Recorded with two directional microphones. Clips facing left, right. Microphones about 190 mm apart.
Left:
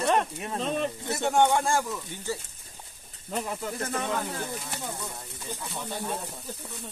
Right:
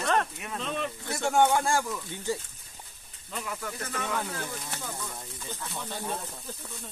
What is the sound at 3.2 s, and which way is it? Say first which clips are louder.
Speech: left 5 dB; 35° left (ahead or behind).